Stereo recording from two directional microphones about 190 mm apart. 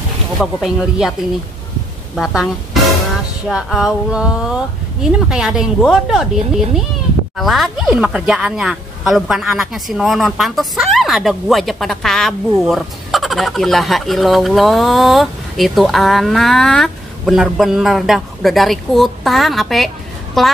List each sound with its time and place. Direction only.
0.4 s speech: centre (ahead or behind)
2.1 s speech: centre (ahead or behind)